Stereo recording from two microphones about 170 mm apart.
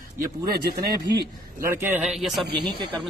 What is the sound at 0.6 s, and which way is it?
Speech, 70° right (ahead or behind).